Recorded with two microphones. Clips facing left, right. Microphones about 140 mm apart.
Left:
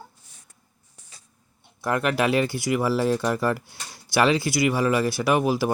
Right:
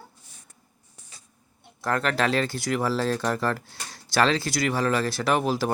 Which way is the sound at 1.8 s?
10° left (ahead or behind).